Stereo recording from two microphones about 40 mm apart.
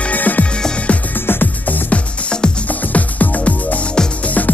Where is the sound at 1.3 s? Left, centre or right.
Left.